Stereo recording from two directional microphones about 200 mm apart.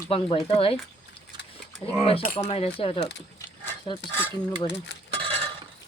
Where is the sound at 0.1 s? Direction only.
30° left (ahead or behind).